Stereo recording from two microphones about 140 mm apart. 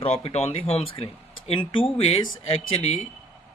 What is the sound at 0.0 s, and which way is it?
Speech, 45° left (ahead or behind).